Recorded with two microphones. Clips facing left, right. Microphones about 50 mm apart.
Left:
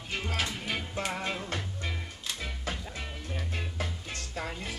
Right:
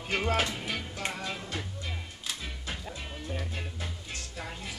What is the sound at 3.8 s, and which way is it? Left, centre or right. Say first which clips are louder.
Music: left 3 dB; left.